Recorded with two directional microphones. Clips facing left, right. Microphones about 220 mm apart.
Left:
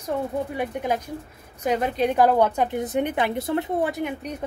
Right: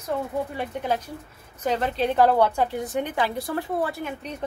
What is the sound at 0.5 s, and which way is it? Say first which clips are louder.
A woman's voice: left 2 dB; 15° left (ahead or behind).